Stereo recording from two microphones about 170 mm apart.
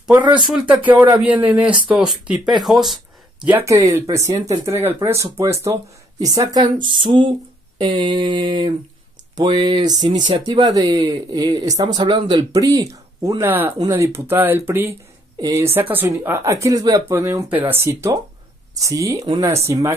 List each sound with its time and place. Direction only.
0.2 s speech: 5° right (ahead or behind)